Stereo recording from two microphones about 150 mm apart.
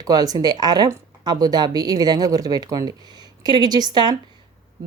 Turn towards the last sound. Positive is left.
turn(degrees=-30)  # may be behind; listen again after turning